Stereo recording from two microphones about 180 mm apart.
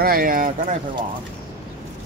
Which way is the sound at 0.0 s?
55° right (ahead or behind).